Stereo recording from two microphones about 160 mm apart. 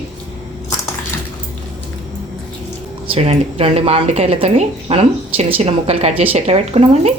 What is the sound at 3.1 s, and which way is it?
A woman's voice, 40° right (ahead or behind).